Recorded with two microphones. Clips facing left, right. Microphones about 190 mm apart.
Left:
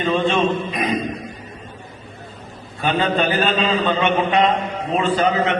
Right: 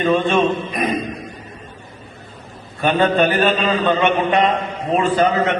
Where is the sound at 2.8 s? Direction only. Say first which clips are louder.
Right 4 dB; 50° right (ahead or behind).